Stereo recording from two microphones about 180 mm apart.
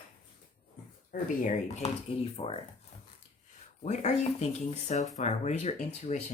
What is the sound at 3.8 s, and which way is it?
Speech, 40° left (ahead or behind).